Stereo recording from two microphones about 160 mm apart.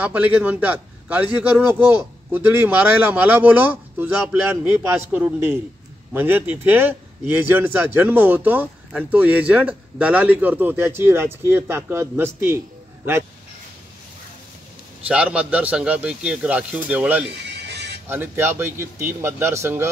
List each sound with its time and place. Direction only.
0.0 s speech: 10° right (ahead or behind)
15.0 s speech: 5° right (ahead or behind)
17.4 s music: 90° right
18.0 s speech: 15° right (ahead or behind)